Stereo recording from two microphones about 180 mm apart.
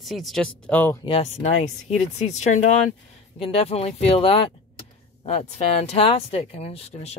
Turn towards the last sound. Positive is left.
turn(degrees=35)  # may be behind; listen again after turning